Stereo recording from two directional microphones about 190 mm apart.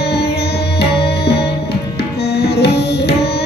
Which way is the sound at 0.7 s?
60° left (ahead or behind).